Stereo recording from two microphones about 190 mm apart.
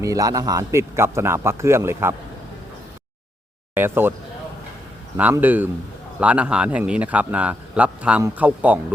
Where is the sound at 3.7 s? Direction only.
10° right (ahead or behind).